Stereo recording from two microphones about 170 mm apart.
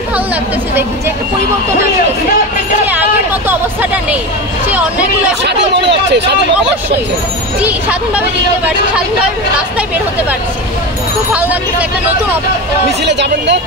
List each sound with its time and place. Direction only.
2.9 s hubbub: 10° right (ahead or behind)
4.6 s speech: 10° right (ahead or behind)
5.9 s speech: 90° right
7.6 s speech: 5° right (ahead or behind)
13.0 s speech: 90° right